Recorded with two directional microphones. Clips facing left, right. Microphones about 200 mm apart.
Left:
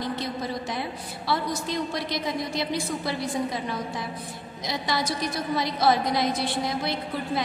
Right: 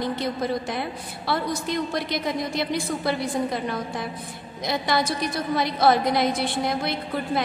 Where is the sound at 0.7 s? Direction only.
55° right (ahead or behind).